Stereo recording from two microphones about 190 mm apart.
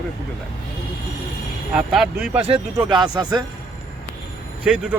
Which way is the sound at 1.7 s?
5° right (ahead or behind).